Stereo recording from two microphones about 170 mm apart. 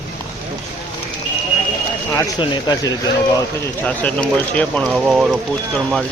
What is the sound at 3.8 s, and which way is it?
Speech, 10° left (ahead or behind).